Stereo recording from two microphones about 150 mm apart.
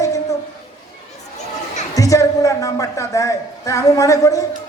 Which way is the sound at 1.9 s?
20° left (ahead or behind).